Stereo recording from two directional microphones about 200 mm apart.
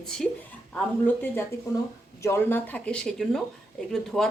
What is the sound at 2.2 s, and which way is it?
A woman's voice, 10° left (ahead or behind).